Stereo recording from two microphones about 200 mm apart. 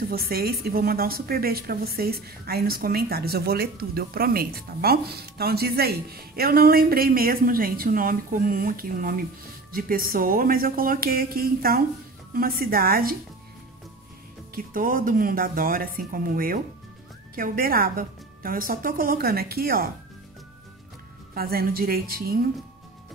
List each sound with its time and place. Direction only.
0.1 s a woman's voice: 50° right (ahead or behind)
14.5 s a woman's voice: 45° right (ahead or behind)
21.4 s a woman's voice: 50° right (ahead or behind)